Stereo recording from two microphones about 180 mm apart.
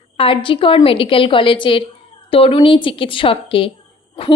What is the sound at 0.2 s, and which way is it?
A woman's voice, 30° left (ahead or behind).